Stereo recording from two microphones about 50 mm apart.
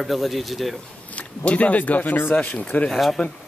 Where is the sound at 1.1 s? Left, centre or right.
Left.